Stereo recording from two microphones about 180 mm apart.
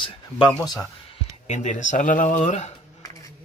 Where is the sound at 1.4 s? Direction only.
40° left (ahead or behind).